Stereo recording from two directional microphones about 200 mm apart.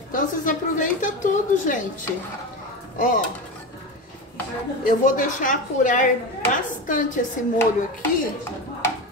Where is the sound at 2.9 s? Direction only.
40° left (ahead or behind).